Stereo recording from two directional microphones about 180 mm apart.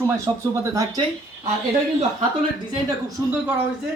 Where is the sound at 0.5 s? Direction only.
15° right (ahead or behind).